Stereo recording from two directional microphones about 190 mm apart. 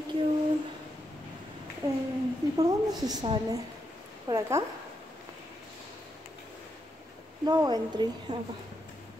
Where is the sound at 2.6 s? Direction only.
20° right (ahead or behind).